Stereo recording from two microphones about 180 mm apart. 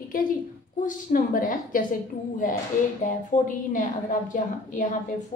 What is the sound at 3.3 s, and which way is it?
A woman's voice, 40° left (ahead or behind).